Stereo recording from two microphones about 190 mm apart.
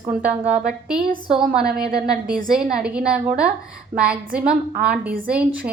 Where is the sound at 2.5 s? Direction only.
5° right (ahead or behind).